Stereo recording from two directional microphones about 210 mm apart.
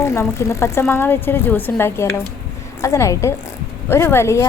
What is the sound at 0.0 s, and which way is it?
A woman's voice, 15° left (ahead or behind).